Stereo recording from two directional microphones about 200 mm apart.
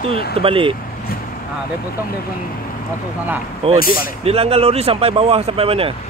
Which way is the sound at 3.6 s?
30° right (ahead or behind).